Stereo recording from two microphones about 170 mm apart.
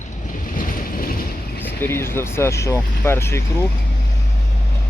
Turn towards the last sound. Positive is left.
turn(degrees=15)  # may be behind; listen again after turning